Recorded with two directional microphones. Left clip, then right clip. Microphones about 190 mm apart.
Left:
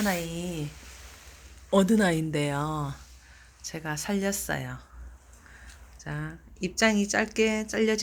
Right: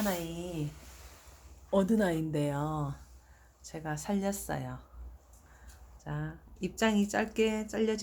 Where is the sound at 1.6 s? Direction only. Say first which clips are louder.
Left 5 dB; 20° left (ahead or behind).